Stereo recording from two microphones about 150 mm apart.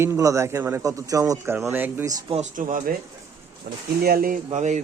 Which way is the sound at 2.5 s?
60° right (ahead or behind).